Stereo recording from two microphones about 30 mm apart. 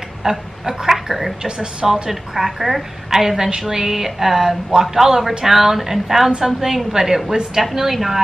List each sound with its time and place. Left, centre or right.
0.2 s pig: centre
1.4 s speech: right
2.0 s a woman's voice: centre